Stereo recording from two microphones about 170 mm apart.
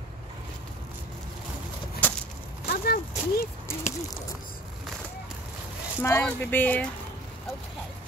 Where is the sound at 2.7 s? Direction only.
65° left (ahead or behind).